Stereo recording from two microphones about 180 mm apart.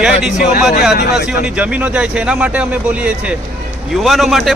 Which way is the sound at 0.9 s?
60° left (ahead or behind).